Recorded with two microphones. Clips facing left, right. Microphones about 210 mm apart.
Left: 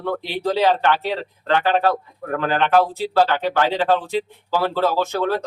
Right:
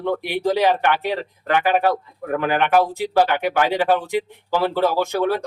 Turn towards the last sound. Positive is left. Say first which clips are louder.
# right 1 dB
turn(degrees=-15)  # may be behind; listen again after turning